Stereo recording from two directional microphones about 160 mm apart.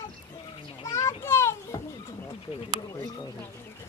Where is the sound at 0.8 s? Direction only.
20° left (ahead or behind).